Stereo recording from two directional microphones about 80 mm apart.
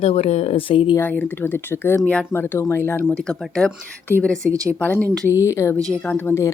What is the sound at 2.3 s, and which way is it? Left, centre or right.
Speech, left.